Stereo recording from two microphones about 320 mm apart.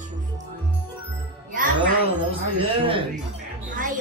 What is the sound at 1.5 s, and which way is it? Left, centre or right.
Music, right.